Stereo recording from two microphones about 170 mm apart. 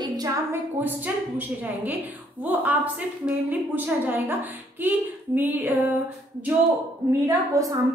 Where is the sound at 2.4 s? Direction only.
10° right (ahead or behind).